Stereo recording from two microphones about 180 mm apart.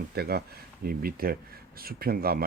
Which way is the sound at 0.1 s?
60° right (ahead or behind).